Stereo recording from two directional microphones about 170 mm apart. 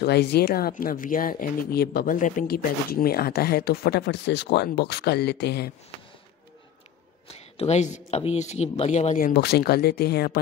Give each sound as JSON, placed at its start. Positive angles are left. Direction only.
{"t": 0.0, "sound": "speech", "side_deg": 75}
{"t": 7.2, "sound": "a man's voice", "side_deg": 40}
{"t": 9.3, "sound": "speech", "side_deg": 70}